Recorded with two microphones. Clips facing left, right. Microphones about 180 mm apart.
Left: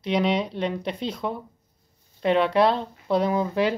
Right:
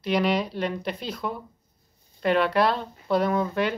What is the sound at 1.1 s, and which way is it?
Speech, 25° left (ahead or behind).